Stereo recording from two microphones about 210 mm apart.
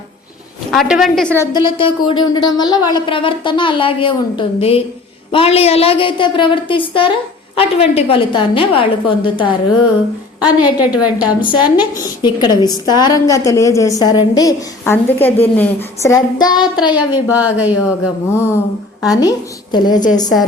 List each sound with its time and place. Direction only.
0.7 s a woman's voice: centre (ahead or behind)
1.5 s speech: 25° left (ahead or behind)
10.4 s a woman's voice: 5° right (ahead or behind)
11.3 s a woman's voice: 20° left (ahead or behind)
17.3 s a woman's voice: 5° right (ahead or behind)
18.3 s a woman's voice: 10° left (ahead or behind)